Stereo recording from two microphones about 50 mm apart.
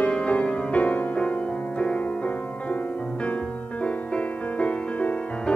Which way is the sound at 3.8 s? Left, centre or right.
Left.